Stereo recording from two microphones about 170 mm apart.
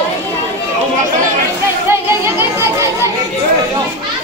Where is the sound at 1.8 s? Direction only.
15° right (ahead or behind).